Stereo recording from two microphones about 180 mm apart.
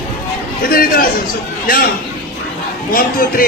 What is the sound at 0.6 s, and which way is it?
A man's voice, 55° left (ahead or behind).